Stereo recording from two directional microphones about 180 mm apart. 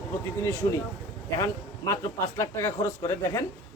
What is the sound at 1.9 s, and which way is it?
A man's voice, 15° left (ahead or behind).